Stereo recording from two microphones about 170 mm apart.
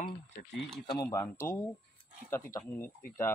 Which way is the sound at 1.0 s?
15° left (ahead or behind).